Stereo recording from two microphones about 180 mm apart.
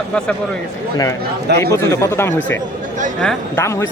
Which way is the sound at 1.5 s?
65° right (ahead or behind).